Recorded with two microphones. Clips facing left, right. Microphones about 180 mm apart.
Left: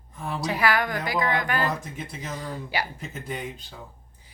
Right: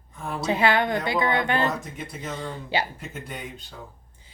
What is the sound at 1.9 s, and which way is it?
Speech, centre (ahead or behind).